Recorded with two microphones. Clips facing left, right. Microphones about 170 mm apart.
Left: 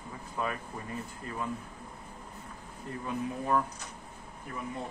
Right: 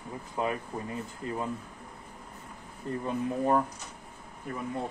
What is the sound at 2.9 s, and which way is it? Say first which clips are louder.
Speech: right 6 dB; 35° right (ahead or behind).